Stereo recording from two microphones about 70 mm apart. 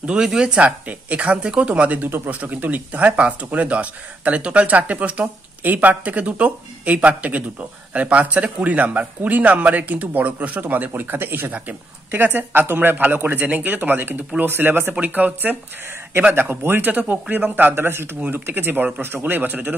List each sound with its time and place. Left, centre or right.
0.0 s speech: centre